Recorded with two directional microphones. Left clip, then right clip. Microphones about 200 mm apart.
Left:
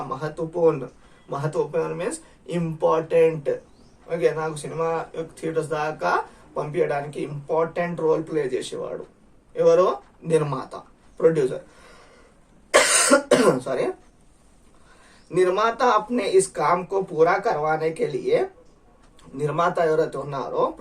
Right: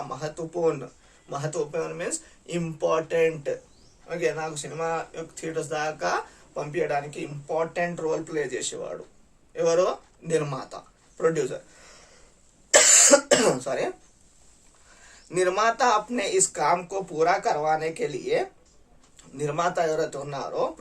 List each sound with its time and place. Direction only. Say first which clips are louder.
0.1 s a man's voice: left 4 dB; 25° right (ahead or behind)
13.1 s cough: left 2 dB; 25° right (ahead or behind)
15.3 s a man's voice: left 2 dB; 25° right (ahead or behind)